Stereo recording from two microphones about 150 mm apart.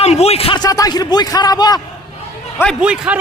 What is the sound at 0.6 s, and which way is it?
Speech, 25° left (ahead or behind).